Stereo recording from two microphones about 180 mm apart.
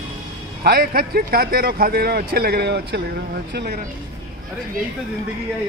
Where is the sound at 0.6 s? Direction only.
60° right (ahead or behind).